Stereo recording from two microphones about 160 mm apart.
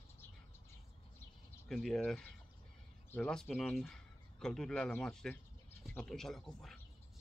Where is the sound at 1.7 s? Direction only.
Centre (ahead or behind).